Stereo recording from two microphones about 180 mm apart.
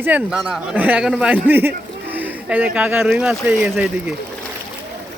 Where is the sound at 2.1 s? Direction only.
10° right (ahead or behind).